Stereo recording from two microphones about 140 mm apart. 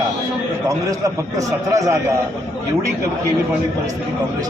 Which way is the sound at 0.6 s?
25° right (ahead or behind).